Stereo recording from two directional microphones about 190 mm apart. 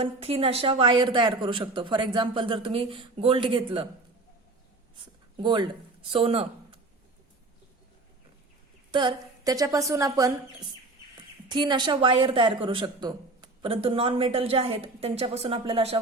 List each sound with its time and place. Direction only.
0.0 s a woman's voice: 30° right (ahead or behind)
5.4 s a woman's voice: 25° right (ahead or behind)
8.9 s a woman's voice: 25° right (ahead or behind)
11.4 s a woman's voice: 25° right (ahead or behind)